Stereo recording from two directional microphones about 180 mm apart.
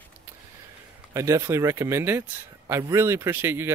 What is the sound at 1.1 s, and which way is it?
Speech, 15° right (ahead or behind).